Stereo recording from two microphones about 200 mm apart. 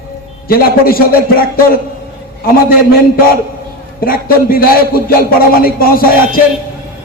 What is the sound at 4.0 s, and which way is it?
A man's voice, 45° left (ahead or behind).